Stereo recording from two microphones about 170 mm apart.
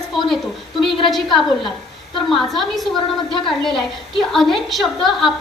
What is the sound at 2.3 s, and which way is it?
A woman's voice, centre (ahead or behind).